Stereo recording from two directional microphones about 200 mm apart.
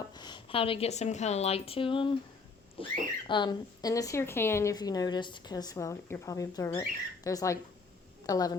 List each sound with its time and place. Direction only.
0.1 s a woman's voice: 20° left (ahead or behind)